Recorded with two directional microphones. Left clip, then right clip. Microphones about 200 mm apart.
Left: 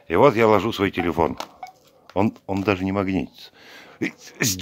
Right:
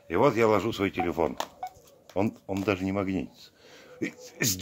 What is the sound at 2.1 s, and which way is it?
Speech, 40° left (ahead or behind).